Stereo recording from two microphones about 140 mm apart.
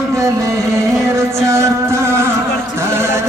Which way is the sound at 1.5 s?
20° right (ahead or behind).